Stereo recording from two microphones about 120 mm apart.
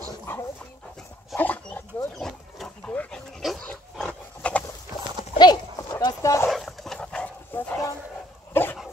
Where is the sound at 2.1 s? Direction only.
5° left (ahead or behind).